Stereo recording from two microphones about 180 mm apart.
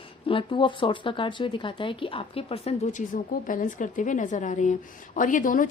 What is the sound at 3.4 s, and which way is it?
A woman's voice, 50° left (ahead or behind).